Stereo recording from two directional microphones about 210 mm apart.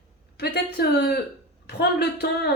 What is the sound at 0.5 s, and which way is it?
Speech, 50° left (ahead or behind).